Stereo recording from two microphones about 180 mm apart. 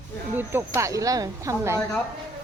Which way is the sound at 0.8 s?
20° right (ahead or behind).